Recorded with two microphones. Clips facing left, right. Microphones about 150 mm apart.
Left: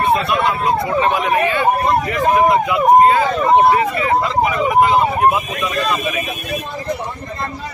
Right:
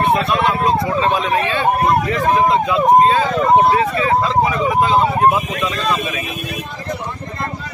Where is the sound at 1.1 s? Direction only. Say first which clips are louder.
Left 1 dB; 15° left (ahead or behind).